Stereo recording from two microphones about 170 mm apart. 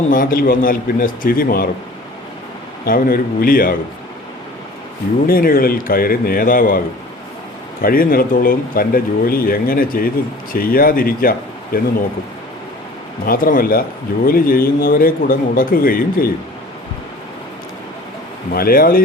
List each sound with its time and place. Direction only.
0.1 s speech: 55° left (ahead or behind)
2.8 s speech: 60° left (ahead or behind)
5.2 s speech: 60° left (ahead or behind)
13.2 s speech: 55° left (ahead or behind)
18.5 s speech: 60° left (ahead or behind)